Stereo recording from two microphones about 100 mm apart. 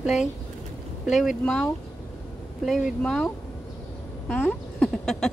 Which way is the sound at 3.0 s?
10° left (ahead or behind).